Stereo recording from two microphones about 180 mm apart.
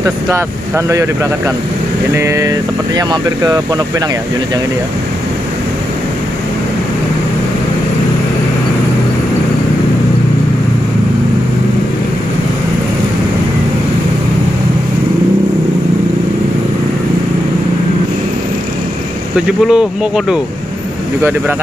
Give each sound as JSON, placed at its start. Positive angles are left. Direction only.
{"t": 0.3, "sound": "speech", "side_deg": -15}
{"t": 19.3, "sound": "speech", "side_deg": -5}